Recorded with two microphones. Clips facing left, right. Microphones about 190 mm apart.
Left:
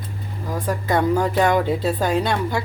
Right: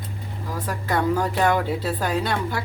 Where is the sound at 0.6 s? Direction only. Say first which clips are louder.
Left 3 dB; 20° left (ahead or behind).